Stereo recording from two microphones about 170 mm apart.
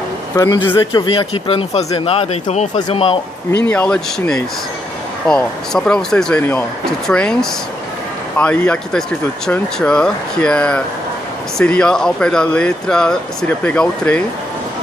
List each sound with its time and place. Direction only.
0.4 s speech: 25° left (ahead or behind)
3.6 s speech: 5° left (ahead or behind)
8.4 s speech: 5° left (ahead or behind)